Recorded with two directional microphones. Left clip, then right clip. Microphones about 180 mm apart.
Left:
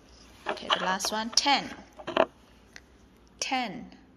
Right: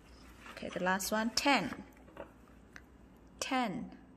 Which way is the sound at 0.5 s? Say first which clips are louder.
Left 7 dB; 35° right (ahead or behind).